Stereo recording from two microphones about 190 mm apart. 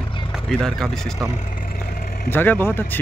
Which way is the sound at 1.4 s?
45° left (ahead or behind).